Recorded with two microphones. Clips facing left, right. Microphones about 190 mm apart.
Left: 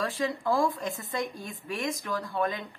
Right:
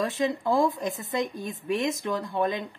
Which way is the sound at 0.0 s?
20° right (ahead or behind).